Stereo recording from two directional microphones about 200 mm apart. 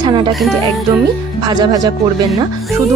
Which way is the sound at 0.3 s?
Centre (ahead or behind).